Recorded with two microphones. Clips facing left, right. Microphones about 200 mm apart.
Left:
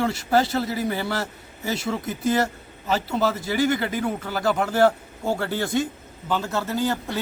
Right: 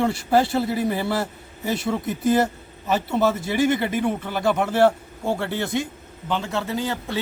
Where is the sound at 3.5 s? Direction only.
25° right (ahead or behind).